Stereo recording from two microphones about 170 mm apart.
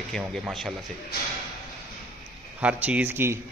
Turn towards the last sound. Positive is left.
turn(degrees=-10)  # may be behind; listen again after turning